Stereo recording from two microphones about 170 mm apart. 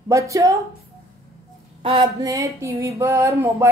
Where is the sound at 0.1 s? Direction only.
20° right (ahead or behind).